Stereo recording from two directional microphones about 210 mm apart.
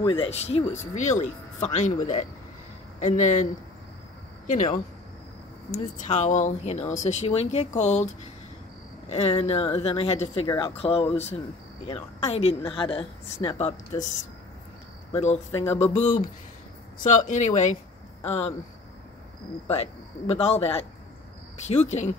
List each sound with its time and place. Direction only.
0.0 s speech: 25° left (ahead or behind)
4.5 s speech: 35° left (ahead or behind)
9.1 s a woman's voice: 30° left (ahead or behind)
10.4 s a woman's voice: 15° left (ahead or behind)
15.1 s speech: 30° left (ahead or behind)
19.7 s a woman's voice: 30° left (ahead or behind)